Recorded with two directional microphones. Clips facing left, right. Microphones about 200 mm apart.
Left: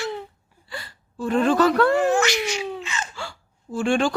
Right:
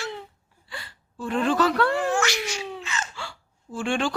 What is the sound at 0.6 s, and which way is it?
Gasp, 40° left (ahead or behind).